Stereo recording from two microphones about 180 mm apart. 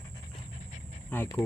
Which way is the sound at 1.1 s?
10° left (ahead or behind).